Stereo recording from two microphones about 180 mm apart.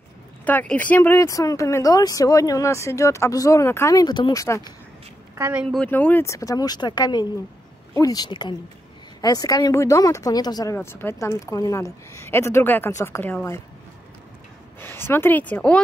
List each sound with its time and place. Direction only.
0.5 s speech: 10° left (ahead or behind)
5.3 s speech: 10° right (ahead or behind)
5.9 s speech: 10° left (ahead or behind)
14.8 s speech: 10° left (ahead or behind)